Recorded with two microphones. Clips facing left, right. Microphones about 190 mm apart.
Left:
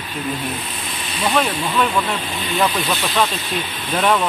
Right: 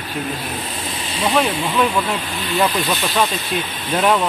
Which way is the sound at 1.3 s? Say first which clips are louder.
Right 1 dB; 10° right (ahead or behind).